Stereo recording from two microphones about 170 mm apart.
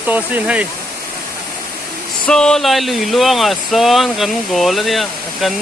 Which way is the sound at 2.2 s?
5° left (ahead or behind).